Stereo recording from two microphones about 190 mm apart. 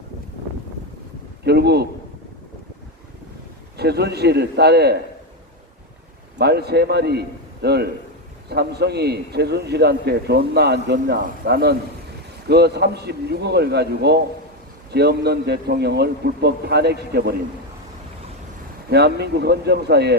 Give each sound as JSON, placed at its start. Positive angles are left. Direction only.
{"t": 1.5, "sound": "a man's voice", "side_deg": -60}
{"t": 3.8, "sound": "a man's voice", "side_deg": -60}
{"t": 6.4, "sound": "a man's voice", "side_deg": -60}
{"t": 18.9, "sound": "a man's voice", "side_deg": -60}